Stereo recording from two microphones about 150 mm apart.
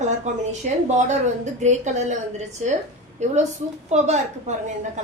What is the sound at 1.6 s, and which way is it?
Speech, 50° right (ahead or behind).